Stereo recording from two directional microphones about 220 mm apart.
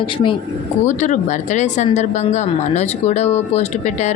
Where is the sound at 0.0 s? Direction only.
20° left (ahead or behind).